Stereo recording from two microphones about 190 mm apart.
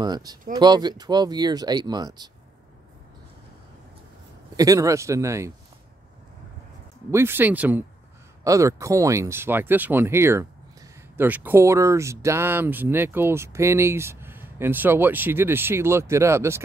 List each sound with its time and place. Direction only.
0.0 s speech: 20° right (ahead or behind)
4.6 s speech: 15° right (ahead or behind)
7.1 s speech: 15° right (ahead or behind)